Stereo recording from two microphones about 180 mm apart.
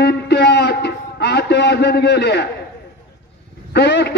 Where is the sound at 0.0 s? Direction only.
70° left (ahead or behind).